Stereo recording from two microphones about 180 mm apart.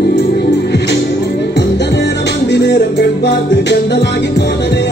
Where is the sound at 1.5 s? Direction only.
70° left (ahead or behind).